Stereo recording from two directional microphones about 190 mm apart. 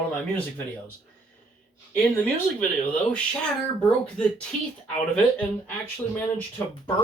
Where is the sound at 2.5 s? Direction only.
5° left (ahead or behind).